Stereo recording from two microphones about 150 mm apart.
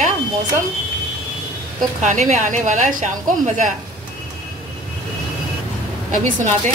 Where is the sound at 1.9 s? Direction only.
55° right (ahead or behind).